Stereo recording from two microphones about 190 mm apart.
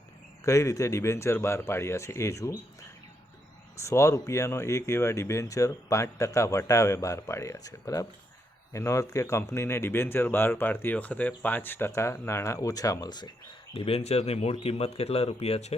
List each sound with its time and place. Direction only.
0.4 s speech: 15° left (ahead or behind)
3.8 s speech: 15° left (ahead or behind); by 15.7 s 35° left (ahead or behind)